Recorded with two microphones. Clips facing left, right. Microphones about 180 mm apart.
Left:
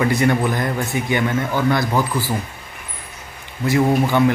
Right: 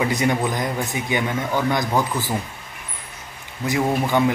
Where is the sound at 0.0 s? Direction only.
15° right (ahead or behind).